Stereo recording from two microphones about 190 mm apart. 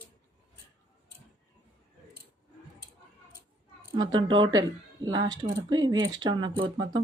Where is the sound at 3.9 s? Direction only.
25° right (ahead or behind).